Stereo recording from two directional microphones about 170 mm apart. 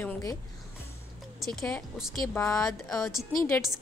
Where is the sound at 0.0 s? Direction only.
15° left (ahead or behind).